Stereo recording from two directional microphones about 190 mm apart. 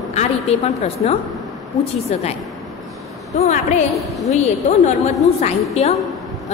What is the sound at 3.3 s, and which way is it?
Speech, 40° left (ahead or behind).